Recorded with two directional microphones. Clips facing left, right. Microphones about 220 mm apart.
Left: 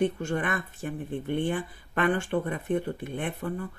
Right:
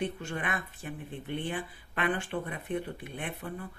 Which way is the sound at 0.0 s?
45° left (ahead or behind).